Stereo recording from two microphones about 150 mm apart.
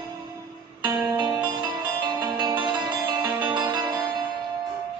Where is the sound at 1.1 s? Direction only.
25° right (ahead or behind).